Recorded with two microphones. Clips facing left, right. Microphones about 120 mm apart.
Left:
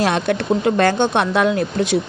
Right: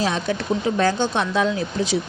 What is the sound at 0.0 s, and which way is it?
Speech, 65° left (ahead or behind).